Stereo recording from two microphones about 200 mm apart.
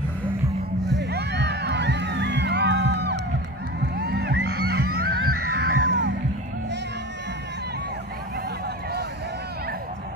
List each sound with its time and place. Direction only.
0.9 s music: 55° right (ahead or behind)